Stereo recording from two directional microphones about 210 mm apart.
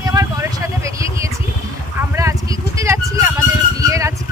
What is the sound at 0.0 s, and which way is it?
Vehicle, 15° right (ahead or behind).